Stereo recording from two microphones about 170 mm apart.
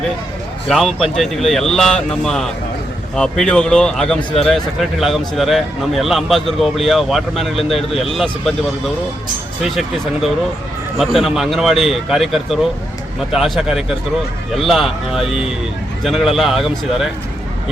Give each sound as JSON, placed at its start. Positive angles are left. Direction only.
{"t": 0.7, "sound": "speech", "side_deg": 0}
{"t": 4.2, "sound": "speech", "side_deg": 30}
{"t": 4.4, "sound": "speech", "side_deg": 0}
{"t": 9.6, "sound": "speech", "side_deg": 0}